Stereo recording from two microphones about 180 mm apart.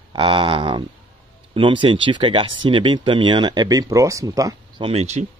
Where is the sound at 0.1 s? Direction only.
25° right (ahead or behind).